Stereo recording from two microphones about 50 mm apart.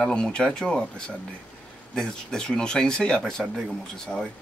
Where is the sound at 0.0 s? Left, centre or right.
Centre.